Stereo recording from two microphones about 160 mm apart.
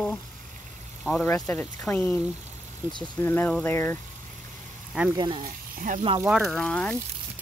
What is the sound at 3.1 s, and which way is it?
Speech, 15° left (ahead or behind).